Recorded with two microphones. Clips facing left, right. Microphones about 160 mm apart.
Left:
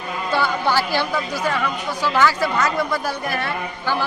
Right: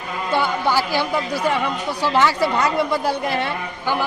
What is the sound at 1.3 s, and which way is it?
Speech, 25° right (ahead or behind).